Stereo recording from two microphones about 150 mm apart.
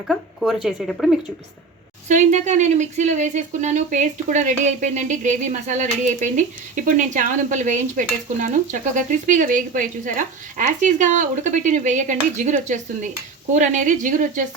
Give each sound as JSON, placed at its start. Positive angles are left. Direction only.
{"t": 0.1, "sound": "speech", "side_deg": 0}
{"t": 2.0, "sound": "speech", "side_deg": -55}
{"t": 6.8, "sound": "stir", "side_deg": -60}